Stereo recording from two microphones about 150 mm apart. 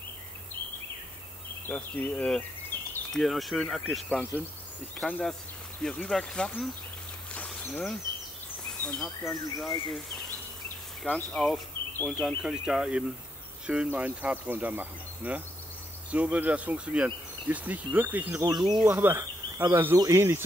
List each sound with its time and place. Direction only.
1.7 s speech: 10° left (ahead or behind)
2.7 s a sound: 15° left (ahead or behind)
3.1 s speech: centre (ahead or behind)
7.3 s a sound: 10° left (ahead or behind)
8.8 s speech: 5° left (ahead or behind)
11.1 s speech: 5° left (ahead or behind); by 18.4 s 10° right (ahead or behind)
18.4 s speech: 25° right (ahead or behind)
18.9 s speech: 15° right (ahead or behind)